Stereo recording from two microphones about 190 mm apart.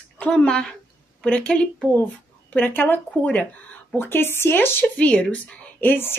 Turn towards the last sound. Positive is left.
turn(degrees=10)  # may be behind; listen again after turning